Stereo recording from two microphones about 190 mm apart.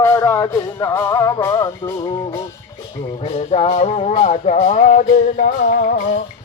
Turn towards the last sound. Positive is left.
turn(degrees=45)  # may be behind; listen again after turning